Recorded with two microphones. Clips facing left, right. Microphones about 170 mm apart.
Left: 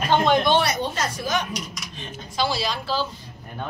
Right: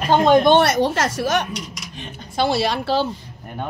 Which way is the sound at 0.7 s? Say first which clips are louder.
Right 7 dB; 90° right.